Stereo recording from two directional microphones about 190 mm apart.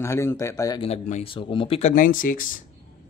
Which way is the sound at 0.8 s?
35° left (ahead or behind).